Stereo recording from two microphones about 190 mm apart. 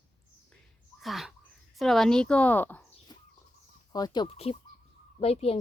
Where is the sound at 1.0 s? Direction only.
Centre (ahead or behind).